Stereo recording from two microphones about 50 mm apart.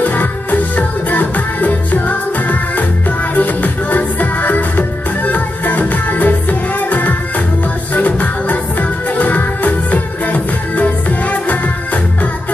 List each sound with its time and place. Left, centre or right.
0.0 s music: left